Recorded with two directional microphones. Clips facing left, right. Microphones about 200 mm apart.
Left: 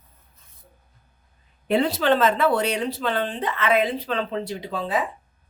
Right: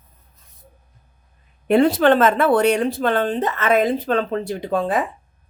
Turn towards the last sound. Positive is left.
turn(degrees=-50)  # may be behind; listen again after turning